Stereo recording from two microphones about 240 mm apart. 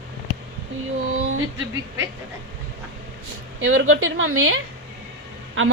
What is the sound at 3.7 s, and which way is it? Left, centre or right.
Speech, right.